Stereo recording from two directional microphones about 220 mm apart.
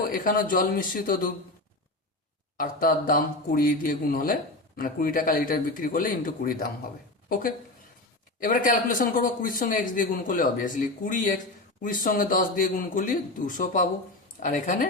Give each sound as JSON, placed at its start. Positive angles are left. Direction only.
{"t": 0.1, "sound": "a man's voice", "side_deg": 40}
{"t": 2.6, "sound": "a man's voice", "side_deg": 40}
{"t": 8.4, "sound": "a man's voice", "side_deg": 40}